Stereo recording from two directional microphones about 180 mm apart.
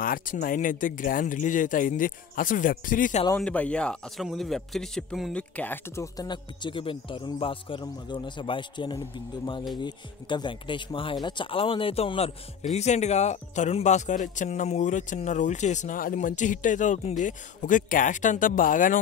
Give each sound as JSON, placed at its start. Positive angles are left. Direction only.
{"t": 0.0, "sound": "speech", "side_deg": 50}
{"t": 3.3, "sound": "a man's voice", "side_deg": 5}